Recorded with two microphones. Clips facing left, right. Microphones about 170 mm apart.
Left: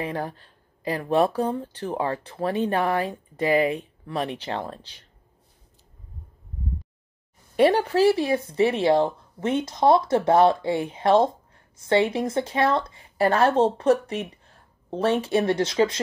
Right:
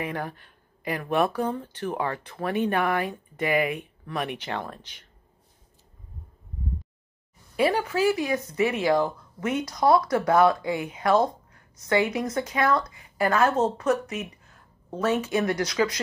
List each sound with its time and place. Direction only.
0.0 s speech: 30° left (ahead or behind)
7.5 s speech: 35° left (ahead or behind)